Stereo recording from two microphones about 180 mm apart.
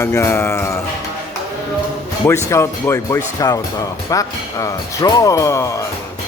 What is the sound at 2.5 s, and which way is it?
Speech, 15° left (ahead or behind).